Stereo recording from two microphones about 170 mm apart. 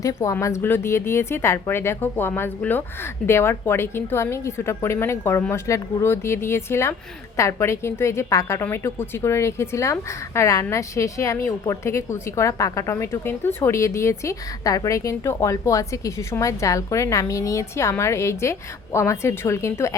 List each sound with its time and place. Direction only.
0.0 s a woman's voice: 20° left (ahead or behind)